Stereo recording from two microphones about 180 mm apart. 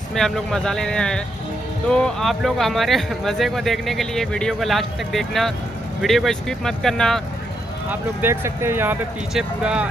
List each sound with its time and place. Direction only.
0.1 s speech: 5° left (ahead or behind)
7.9 s speech: 10° right (ahead or behind)